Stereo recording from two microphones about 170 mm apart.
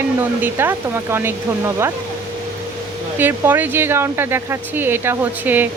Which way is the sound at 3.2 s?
10° right (ahead or behind).